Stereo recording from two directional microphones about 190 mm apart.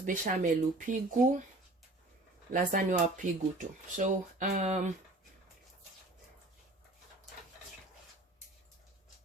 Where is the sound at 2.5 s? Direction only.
45° right (ahead or behind).